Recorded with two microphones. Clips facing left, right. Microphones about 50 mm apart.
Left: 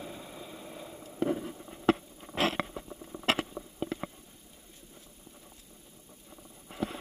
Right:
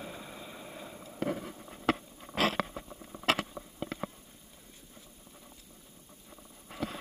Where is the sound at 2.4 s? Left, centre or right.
Left.